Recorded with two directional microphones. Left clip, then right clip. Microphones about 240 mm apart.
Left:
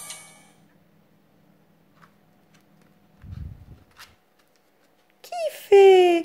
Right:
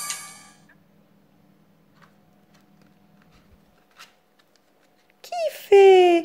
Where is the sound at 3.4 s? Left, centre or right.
Centre.